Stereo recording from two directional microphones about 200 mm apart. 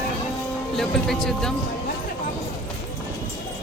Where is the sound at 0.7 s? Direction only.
Centre (ahead or behind).